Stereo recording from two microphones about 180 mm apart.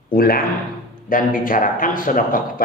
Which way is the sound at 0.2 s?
55° left (ahead or behind).